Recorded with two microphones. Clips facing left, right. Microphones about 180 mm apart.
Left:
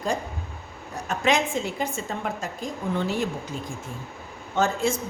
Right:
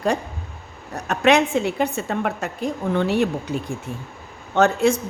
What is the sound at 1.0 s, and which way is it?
A woman's voice, 65° right (ahead or behind).